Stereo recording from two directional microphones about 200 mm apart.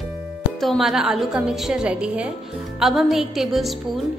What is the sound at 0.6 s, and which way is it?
A woman's voice, centre (ahead or behind).